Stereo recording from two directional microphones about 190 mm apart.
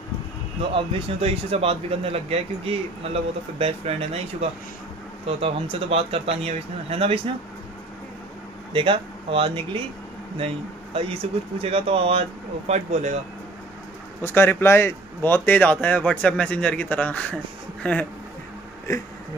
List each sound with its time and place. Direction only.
0.6 s speech: 30° right (ahead or behind)
8.7 s speech: 25° right (ahead or behind)
14.2 s speech: 10° left (ahead or behind)